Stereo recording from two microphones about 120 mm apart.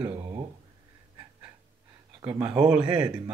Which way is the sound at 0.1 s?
25° right (ahead or behind).